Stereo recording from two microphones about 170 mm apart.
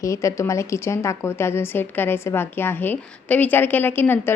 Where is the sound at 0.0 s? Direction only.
20° left (ahead or behind).